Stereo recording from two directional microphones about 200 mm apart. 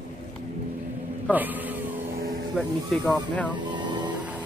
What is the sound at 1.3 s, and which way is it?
Speech, 10° right (ahead or behind).